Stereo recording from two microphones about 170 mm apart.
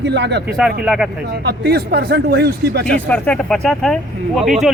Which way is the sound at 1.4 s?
70° right (ahead or behind).